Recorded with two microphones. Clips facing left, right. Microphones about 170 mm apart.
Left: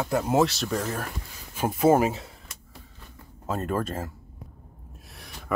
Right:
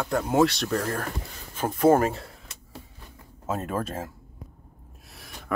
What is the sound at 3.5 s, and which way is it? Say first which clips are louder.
Speech: left 1 dB; centre (ahead or behind).